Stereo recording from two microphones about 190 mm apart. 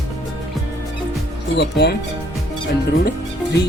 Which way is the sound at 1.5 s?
65° left (ahead or behind).